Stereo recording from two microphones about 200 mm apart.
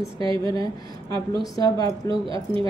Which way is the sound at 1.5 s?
20° left (ahead or behind).